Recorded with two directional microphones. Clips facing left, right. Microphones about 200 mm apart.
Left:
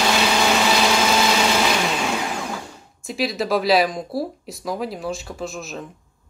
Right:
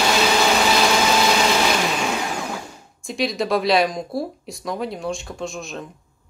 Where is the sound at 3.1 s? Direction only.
5° left (ahead or behind).